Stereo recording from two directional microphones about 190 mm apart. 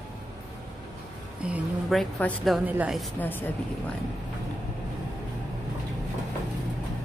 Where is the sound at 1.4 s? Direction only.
5° right (ahead or behind).